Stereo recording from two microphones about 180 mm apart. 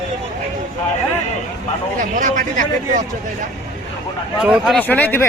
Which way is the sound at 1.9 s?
45° right (ahead or behind).